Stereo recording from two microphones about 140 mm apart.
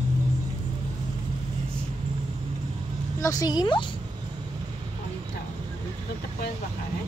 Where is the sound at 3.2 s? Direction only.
25° left (ahead or behind).